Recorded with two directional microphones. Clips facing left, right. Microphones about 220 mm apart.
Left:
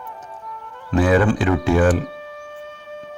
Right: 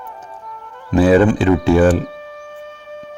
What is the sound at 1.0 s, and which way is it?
Speech, 30° right (ahead or behind).